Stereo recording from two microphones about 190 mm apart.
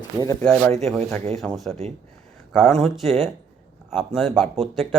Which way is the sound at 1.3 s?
Centre (ahead or behind).